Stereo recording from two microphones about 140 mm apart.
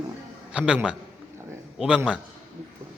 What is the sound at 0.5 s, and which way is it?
Speech, 5° right (ahead or behind).